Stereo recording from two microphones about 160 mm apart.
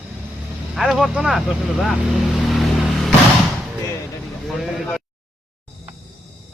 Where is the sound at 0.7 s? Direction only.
Centre (ahead or behind).